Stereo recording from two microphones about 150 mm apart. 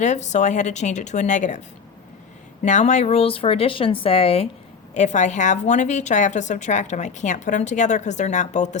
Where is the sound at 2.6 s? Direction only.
50° left (ahead or behind).